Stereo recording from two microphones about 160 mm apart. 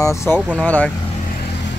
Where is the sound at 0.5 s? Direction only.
10° left (ahead or behind).